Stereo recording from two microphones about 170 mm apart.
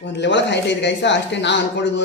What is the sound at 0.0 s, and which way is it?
Speech, 90° left.